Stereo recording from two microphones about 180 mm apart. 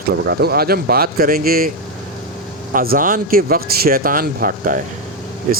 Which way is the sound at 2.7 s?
50° right (ahead or behind).